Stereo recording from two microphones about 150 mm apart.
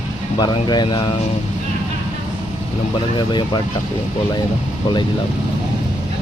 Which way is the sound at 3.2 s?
30° left (ahead or behind).